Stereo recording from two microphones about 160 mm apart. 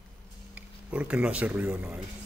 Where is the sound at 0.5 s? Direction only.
10° right (ahead or behind).